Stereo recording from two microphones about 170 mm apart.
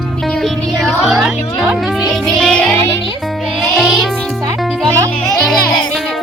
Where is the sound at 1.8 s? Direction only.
Centre (ahead or behind).